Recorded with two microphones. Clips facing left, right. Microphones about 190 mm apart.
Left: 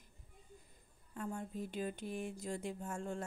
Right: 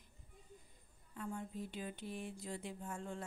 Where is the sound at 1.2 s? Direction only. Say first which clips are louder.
Left 2 dB; 45° left (ahead or behind).